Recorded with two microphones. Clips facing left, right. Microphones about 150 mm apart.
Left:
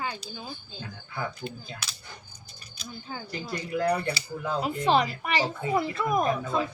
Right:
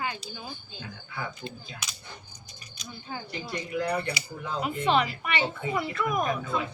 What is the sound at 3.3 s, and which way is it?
Speech, 35° left (ahead or behind).